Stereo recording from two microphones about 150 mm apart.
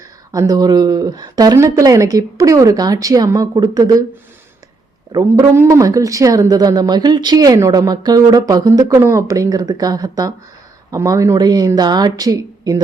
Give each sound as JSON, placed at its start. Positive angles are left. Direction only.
{"t": 0.3, "sound": "a woman's voice", "side_deg": -25}
{"t": 5.1, "sound": "a woman's voice", "side_deg": -25}